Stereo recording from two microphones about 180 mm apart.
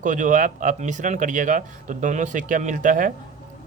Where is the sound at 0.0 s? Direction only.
45° right (ahead or behind).